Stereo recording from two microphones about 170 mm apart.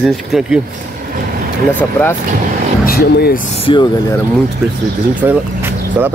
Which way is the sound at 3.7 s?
30° left (ahead or behind).